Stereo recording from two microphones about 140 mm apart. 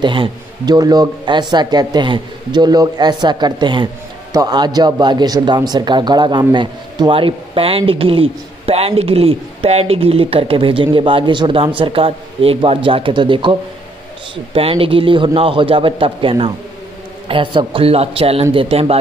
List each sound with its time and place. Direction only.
0.0 s a man's voice: 35° right (ahead or behind)